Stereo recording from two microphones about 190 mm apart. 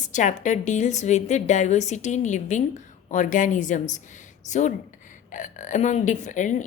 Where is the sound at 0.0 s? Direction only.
40° left (ahead or behind).